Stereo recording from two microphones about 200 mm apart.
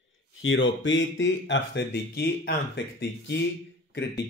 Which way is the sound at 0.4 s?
75° left (ahead or behind).